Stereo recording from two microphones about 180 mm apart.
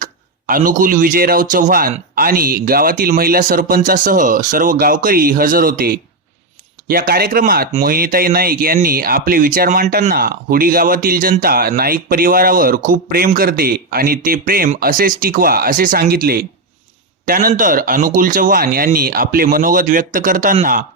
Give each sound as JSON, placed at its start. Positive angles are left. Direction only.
{"t": 0.0, "sound": "a man's voice", "side_deg": -50}